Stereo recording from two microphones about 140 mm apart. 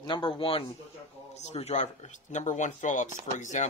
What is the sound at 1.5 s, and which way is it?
Speech, 50° left (ahead or behind).